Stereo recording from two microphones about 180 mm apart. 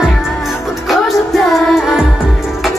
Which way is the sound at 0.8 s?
Centre (ahead or behind).